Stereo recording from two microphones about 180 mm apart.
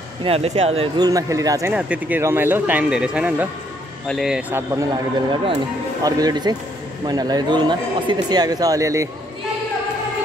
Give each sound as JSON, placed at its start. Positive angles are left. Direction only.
{"t": 0.2, "sound": "speech", "side_deg": -35}
{"t": 1.0, "sound": "speech", "side_deg": -20}
{"t": 1.7, "sound": "speech", "side_deg": -5}
{"t": 6.0, "sound": "speech", "side_deg": -20}